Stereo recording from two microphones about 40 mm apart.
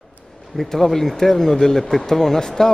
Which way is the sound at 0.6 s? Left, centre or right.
Centre.